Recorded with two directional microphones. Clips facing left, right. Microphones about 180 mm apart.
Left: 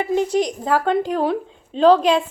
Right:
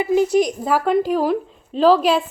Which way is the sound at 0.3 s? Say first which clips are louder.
Right 2 dB; 10° right (ahead or behind).